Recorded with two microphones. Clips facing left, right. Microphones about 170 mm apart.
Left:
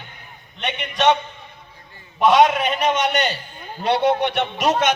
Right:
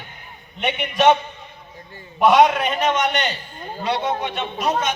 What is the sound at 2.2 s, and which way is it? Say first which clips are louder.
Speech: even; centre (ahead or behind).